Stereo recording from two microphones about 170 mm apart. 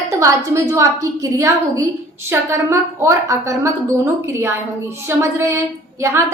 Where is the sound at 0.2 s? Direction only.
15° right (ahead or behind).